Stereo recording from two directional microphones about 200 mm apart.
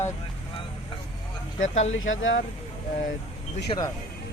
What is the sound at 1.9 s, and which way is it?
Speech, 75° left (ahead or behind).